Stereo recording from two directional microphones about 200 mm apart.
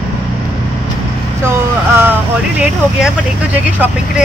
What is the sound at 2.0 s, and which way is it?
Speech, 10° right (ahead or behind).